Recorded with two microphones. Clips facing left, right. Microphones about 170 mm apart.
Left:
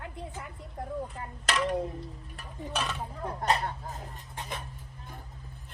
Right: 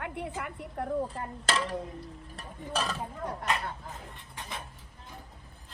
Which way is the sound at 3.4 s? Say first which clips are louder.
Left 6 dB; 35° left (ahead or behind).